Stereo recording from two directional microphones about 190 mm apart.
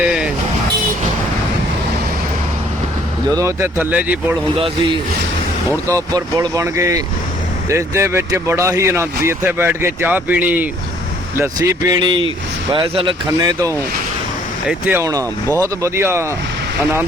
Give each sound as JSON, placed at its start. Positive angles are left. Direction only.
{"t": 3.2, "sound": "speech", "side_deg": -15}
{"t": 4.5, "sound": "speech", "side_deg": -30}
{"t": 11.3, "sound": "speech", "side_deg": -20}